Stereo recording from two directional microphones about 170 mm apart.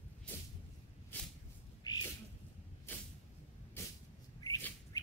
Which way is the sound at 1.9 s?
20° left (ahead or behind).